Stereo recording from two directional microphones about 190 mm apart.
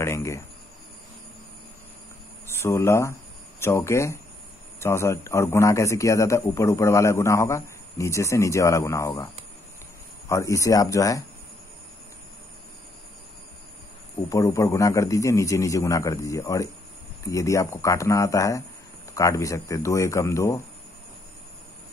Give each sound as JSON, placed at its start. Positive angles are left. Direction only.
{"t": 0.0, "sound": "a man's voice", "side_deg": 15}
{"t": 2.4, "sound": "a man's voice", "side_deg": 15}
{"t": 14.3, "sound": "a man's voice", "side_deg": 15}